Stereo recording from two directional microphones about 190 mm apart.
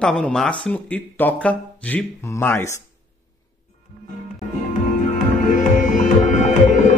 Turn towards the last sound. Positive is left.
turn(degrees=40)  # may be behind; listen again after turning